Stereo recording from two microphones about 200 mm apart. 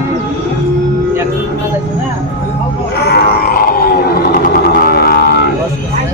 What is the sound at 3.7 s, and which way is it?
Roaring cats, 50° left (ahead or behind).